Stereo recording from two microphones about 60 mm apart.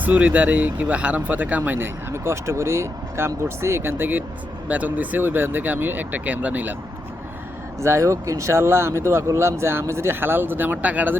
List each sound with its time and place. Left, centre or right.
0.0 s speech: right
4.7 s speech: right
7.8 s speech: right